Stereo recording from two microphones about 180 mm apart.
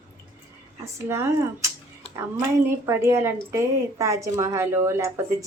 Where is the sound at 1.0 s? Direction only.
15° right (ahead or behind).